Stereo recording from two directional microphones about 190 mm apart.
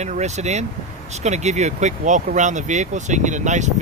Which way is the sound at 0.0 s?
35° right (ahead or behind).